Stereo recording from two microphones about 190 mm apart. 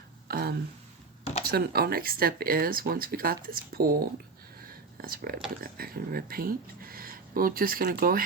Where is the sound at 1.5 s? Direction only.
55° right (ahead or behind).